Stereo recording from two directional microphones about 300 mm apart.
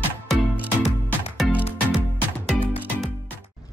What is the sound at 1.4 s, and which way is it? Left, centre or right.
Music, centre.